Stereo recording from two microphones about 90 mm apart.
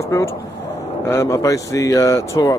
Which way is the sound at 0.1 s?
30° left (ahead or behind).